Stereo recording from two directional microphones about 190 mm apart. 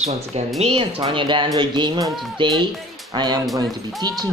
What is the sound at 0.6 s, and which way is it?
Speech, 30° right (ahead or behind).